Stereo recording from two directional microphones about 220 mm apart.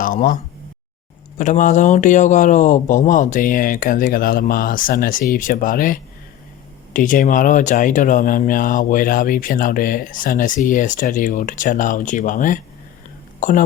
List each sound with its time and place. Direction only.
0.0 s speech: 40° left (ahead or behind)
1.4 s speech: 35° left (ahead or behind)